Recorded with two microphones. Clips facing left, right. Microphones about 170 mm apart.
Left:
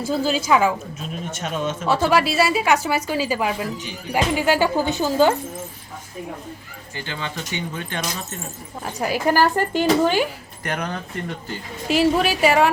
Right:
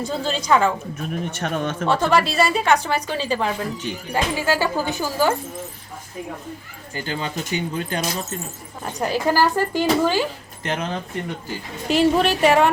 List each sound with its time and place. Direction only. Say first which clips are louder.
0.0 s a woman's voice: left 3 dB; 5° left (ahead or behind)
0.9 s speech: right 3 dB; 60° right (ahead or behind)
1.9 s a woman's voice: left 1 dB; 5° left (ahead or behind)
6.9 s speech: right 3 dB; 40° right (ahead or behind)
8.8 s a woman's voice: even; 5° left (ahead or behind)
9.1 s a woman's voice: left 1 dB; 15° left (ahead or behind)
10.6 s speech: right 1 dB; 25° right (ahead or behind)
11.9 s a woman's voice: right 1 dB; centre (ahead or behind)